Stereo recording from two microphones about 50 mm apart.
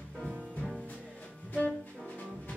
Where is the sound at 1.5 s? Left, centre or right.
Left.